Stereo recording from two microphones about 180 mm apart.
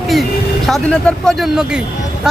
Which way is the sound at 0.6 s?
5° left (ahead or behind).